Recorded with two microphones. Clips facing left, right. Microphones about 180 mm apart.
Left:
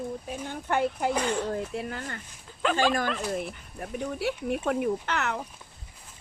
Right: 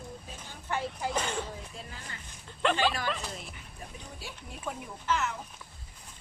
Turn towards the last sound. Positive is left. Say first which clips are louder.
# left 2 dB
turn(degrees=65)  # may be behind; listen again after turning